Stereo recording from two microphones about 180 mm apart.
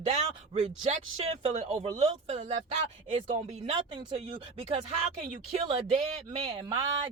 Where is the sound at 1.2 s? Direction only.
35° right (ahead or behind).